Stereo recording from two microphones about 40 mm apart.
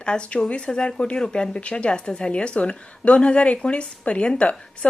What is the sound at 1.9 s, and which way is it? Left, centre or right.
A woman's voice, left.